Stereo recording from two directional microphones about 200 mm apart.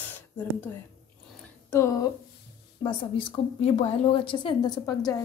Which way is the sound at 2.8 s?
25° left (ahead or behind).